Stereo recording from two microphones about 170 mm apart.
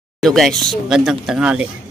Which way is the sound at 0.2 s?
Centre (ahead or behind).